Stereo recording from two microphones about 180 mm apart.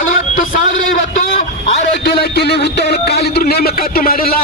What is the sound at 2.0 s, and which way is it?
A man's voice, 65° left (ahead or behind).